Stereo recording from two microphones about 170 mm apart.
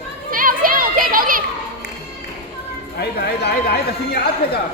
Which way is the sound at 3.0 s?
70° left (ahead or behind).